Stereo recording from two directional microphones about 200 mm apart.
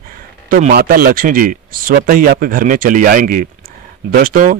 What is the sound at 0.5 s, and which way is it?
A man's voice, 40° right (ahead or behind).